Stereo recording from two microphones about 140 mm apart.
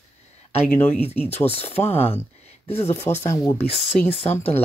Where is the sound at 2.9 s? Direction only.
20° left (ahead or behind).